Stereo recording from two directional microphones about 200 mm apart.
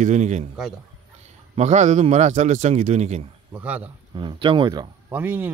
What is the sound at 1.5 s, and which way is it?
A man's voice, 35° right (ahead or behind).